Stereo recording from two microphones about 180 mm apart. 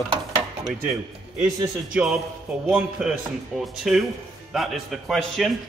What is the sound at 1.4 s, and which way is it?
Speech, 20° right (ahead or behind).